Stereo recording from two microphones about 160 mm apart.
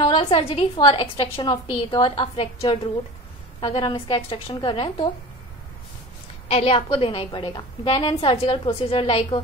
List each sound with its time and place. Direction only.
0.0 s a woman's voice: 35° left (ahead or behind)
6.5 s a woman's voice: 40° left (ahead or behind)